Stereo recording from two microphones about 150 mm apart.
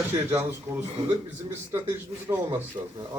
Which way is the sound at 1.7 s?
15° right (ahead or behind).